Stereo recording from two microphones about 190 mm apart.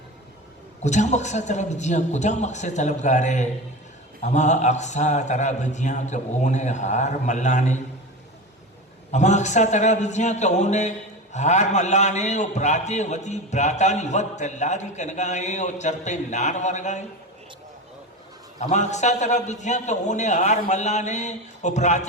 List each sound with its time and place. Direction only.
0.8 s a man's voice: 40° left (ahead or behind)
9.1 s a man's voice: 40° left (ahead or behind)
18.6 s a man's voice: 40° left (ahead or behind)